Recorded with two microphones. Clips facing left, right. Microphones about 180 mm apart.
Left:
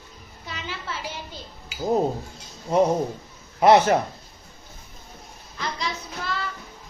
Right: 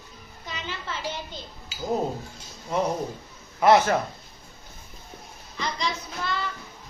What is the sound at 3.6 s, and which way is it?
Speech, 20° left (ahead or behind).